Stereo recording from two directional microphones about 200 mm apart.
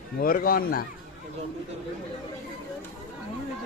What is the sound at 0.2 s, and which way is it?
Speech, 45° left (ahead or behind).